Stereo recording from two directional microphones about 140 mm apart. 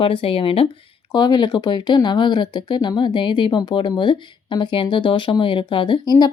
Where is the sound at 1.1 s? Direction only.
30° left (ahead or behind).